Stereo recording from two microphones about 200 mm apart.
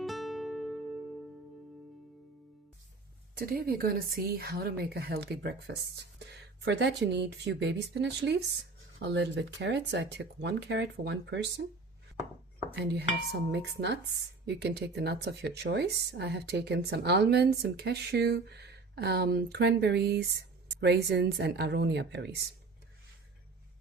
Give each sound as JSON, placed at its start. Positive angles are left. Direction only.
{"t": 0.0, "sound": "music", "side_deg": 0}
{"t": 3.3, "sound": "a woman's voice", "side_deg": -50}
{"t": 12.7, "sound": "speech", "side_deg": -55}